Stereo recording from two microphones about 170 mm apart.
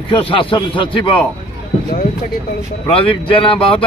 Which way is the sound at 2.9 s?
30° left (ahead or behind).